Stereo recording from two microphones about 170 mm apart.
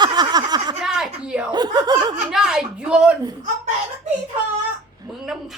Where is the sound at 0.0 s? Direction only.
25° right (ahead or behind).